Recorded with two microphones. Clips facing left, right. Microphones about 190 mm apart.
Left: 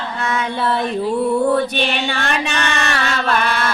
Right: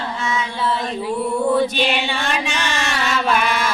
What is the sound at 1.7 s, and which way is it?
Mantra, 60° left (ahead or behind).